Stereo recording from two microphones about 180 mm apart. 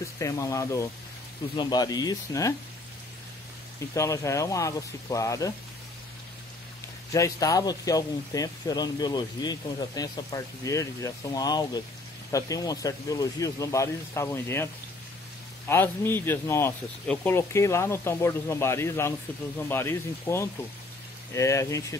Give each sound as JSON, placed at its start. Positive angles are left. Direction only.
{"t": 0.2, "sound": "speech", "side_deg": 15}
{"t": 3.9, "sound": "speech", "side_deg": 15}
{"t": 7.1, "sound": "speech", "side_deg": 20}
{"t": 15.7, "sound": "speech", "side_deg": 10}